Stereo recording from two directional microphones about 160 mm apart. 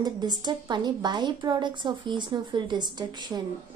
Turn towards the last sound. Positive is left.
turn(degrees=-25)  # may be behind; listen again after turning